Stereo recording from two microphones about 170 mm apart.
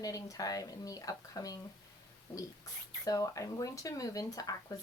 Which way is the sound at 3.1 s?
20° left (ahead or behind).